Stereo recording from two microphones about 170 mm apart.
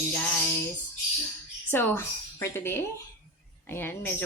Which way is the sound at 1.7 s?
10° left (ahead or behind).